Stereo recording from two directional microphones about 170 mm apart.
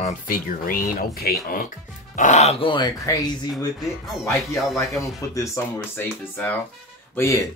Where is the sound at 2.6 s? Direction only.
25° left (ahead or behind).